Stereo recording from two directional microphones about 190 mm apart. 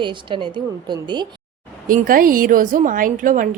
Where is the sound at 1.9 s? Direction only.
45° right (ahead or behind).